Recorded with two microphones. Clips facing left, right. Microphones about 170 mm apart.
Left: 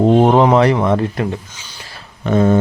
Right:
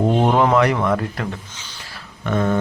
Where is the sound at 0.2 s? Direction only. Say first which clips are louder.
Left 5 dB; 35° left (ahead or behind).